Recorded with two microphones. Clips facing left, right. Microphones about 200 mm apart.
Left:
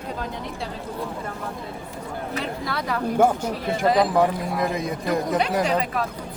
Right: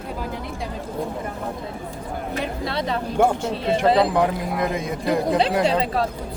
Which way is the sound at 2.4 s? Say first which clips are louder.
Right 5 dB; 25° right (ahead or behind).